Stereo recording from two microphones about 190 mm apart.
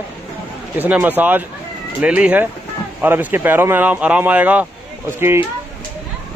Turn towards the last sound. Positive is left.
turn(degrees=-10)  # may be behind; listen again after turning